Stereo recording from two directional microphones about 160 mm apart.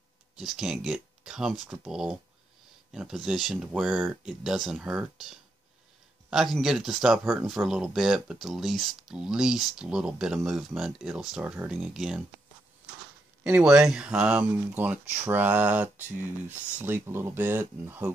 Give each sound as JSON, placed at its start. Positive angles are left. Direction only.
{"t": 0.4, "sound": "speech", "side_deg": -5}
{"t": 13.4, "sound": "speech", "side_deg": -5}